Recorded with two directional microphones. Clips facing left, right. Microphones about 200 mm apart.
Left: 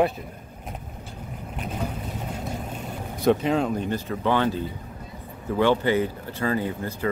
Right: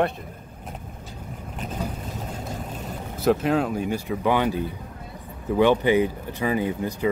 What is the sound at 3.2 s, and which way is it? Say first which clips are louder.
Speech: even; 5° right (ahead or behind).